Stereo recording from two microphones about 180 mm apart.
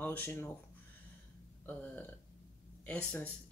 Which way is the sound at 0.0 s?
10° left (ahead or behind).